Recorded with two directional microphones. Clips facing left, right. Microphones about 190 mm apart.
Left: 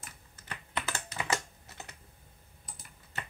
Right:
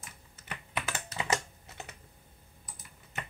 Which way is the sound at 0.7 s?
10° right (ahead or behind).